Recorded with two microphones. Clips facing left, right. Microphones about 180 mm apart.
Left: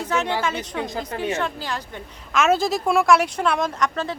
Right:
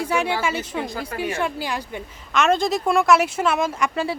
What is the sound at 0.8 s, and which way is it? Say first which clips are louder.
Speech: left 1 dB; 20° left (ahead or behind).